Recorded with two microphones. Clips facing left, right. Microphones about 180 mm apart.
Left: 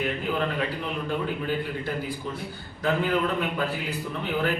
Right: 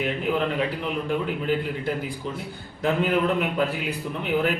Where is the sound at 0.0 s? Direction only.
20° right (ahead or behind).